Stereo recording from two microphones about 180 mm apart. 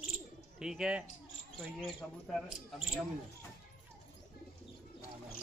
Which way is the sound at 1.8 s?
Centre (ahead or behind).